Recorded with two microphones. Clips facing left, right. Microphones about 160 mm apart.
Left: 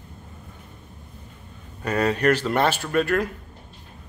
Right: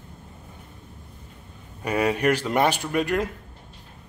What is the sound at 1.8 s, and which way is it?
Speech, 10° right (ahead or behind).